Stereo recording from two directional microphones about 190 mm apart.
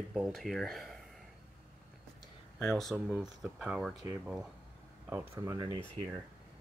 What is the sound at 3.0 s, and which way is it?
Speech, 10° right (ahead or behind).